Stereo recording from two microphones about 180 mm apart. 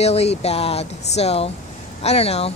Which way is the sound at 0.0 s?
35° left (ahead or behind).